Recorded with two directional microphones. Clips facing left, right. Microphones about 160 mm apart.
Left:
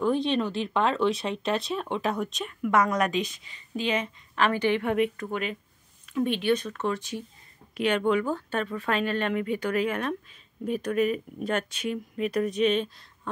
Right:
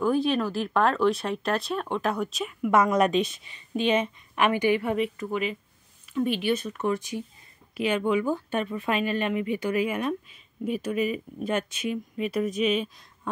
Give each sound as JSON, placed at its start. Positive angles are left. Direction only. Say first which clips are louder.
{"t": 0.0, "sound": "speech", "louder": "right 1 dB", "side_deg": -5}
{"t": 2.7, "sound": "a woman's voice", "louder": "right 3 dB", "side_deg": -25}